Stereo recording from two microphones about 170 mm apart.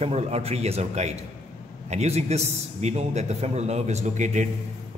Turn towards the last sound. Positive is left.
turn(degrees=-45)  # may be behind; listen again after turning